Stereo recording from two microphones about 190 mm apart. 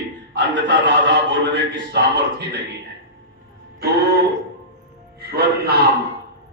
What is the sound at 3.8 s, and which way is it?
Speech, 55° right (ahead or behind).